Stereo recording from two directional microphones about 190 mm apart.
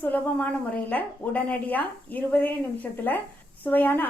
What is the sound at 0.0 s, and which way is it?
A woman's voice, 10° left (ahead or behind).